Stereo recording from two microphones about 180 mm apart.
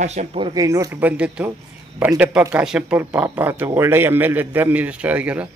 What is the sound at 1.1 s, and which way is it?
Speech, 5° right (ahead or behind).